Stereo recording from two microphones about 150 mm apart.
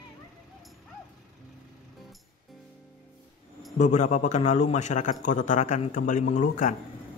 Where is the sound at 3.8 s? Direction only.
50° left (ahead or behind).